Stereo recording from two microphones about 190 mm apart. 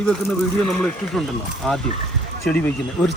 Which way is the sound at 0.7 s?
Centre (ahead or behind).